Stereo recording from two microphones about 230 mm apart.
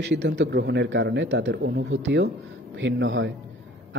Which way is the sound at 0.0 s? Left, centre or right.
Right.